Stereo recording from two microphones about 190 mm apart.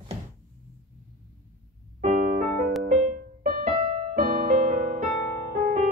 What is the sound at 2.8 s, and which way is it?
Music, 35° right (ahead or behind).